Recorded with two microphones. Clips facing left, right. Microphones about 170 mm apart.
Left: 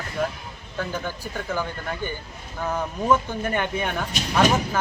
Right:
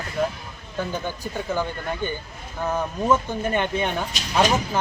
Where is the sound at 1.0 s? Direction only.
15° right (ahead or behind).